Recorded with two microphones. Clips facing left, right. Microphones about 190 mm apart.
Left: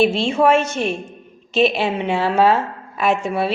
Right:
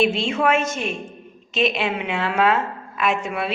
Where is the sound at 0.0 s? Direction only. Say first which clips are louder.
Left 4 dB; 30° left (ahead or behind).